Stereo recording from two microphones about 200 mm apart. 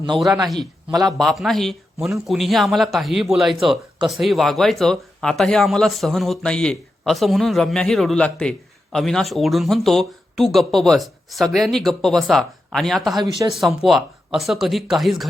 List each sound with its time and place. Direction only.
0.9 s a man's voice: 20° right (ahead or behind)
1.2 s speech: centre (ahead or behind)